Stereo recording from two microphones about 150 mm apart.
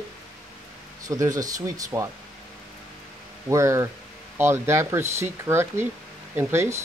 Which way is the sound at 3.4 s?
20° right (ahead or behind).